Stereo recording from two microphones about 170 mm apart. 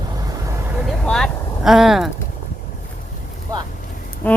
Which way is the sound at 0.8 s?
5° left (ahead or behind).